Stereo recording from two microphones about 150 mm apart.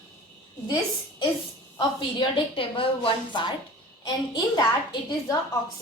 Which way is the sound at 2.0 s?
30° left (ahead or behind).